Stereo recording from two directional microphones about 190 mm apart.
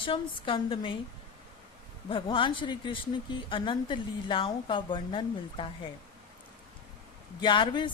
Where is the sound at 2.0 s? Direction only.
25° left (ahead or behind).